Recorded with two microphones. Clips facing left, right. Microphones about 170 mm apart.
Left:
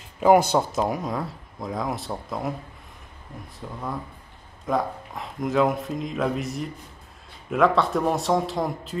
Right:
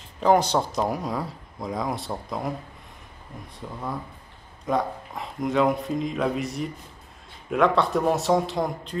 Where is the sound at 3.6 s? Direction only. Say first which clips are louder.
Even; centre (ahead or behind).